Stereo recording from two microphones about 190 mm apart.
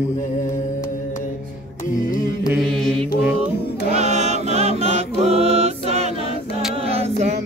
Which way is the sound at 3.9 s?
35° right (ahead or behind).